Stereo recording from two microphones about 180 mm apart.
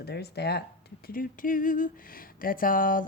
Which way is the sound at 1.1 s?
50° left (ahead or behind).